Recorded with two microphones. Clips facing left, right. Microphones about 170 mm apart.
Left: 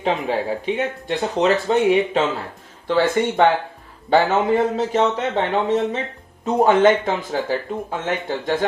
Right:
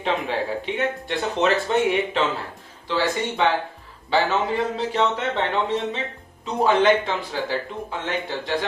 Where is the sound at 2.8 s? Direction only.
55° left (ahead or behind).